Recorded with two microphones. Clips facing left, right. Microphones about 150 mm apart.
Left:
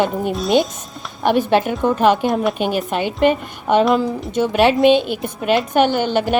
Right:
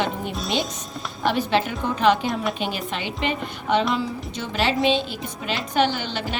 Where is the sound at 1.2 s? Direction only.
50° left (ahead or behind).